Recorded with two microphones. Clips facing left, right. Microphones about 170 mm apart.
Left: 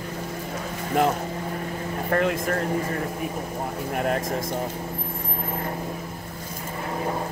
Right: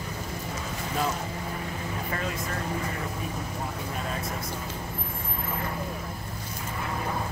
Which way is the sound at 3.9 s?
65° left (ahead or behind).